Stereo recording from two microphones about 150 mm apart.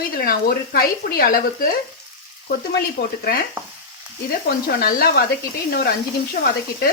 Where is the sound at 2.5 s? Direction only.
90° left.